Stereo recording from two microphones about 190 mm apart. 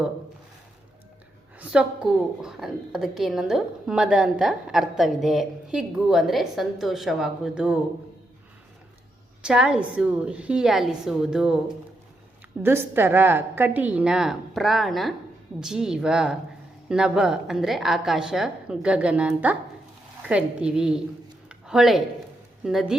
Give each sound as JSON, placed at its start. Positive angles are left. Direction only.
{"t": 1.5, "sound": "a woman's voice", "side_deg": -5}
{"t": 9.4, "sound": "a woman's voice", "side_deg": -5}
{"t": 12.6, "sound": "a woman's voice", "side_deg": -10}
{"t": 21.5, "sound": "a sound", "side_deg": 0}
{"t": 22.6, "sound": "a woman's voice", "side_deg": 0}